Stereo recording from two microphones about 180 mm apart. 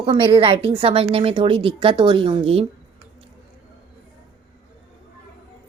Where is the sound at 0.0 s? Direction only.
30° right (ahead or behind).